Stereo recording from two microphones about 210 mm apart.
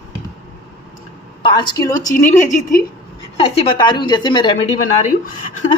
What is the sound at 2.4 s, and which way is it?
Speech, 35° left (ahead or behind).